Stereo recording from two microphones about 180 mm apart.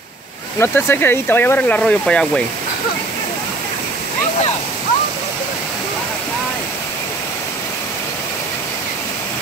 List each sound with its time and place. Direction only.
0.6 s speech: 15° left (ahead or behind)